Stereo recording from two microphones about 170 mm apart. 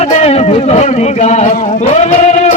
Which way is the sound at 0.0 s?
40° left (ahead or behind).